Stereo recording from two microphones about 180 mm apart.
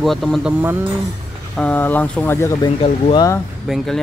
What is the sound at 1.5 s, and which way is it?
Speech, 10° left (ahead or behind).